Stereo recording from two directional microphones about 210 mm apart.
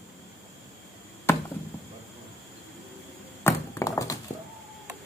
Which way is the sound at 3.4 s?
15° left (ahead or behind).